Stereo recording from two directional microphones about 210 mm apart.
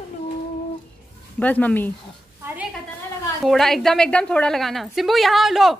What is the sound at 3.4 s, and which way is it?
A woman's voice, centre (ahead or behind).